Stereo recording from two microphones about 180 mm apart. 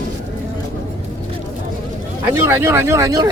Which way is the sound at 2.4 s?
15° right (ahead or behind).